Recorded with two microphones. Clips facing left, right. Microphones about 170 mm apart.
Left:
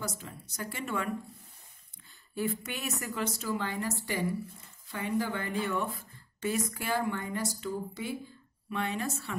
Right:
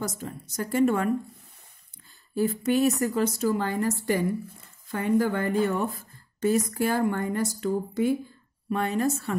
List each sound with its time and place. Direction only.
0.0 s a woman's voice: 45° right (ahead or behind)
2.3 s a woman's voice: 35° right (ahead or behind)